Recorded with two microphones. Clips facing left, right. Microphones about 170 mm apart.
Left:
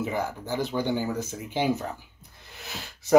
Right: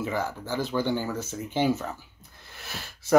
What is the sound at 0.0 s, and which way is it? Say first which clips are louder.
Speech: even; 15° left (ahead or behind).